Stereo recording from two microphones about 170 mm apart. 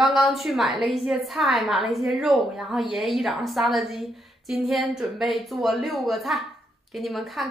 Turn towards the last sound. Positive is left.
turn(degrees=0)  # may be behind; listen again after turning